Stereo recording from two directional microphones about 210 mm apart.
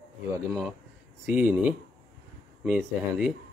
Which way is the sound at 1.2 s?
5° right (ahead or behind).